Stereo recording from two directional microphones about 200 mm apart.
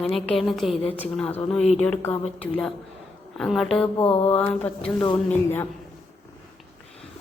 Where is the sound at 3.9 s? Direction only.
25° left (ahead or behind).